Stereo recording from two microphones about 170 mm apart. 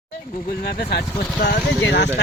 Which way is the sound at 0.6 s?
65° left (ahead or behind).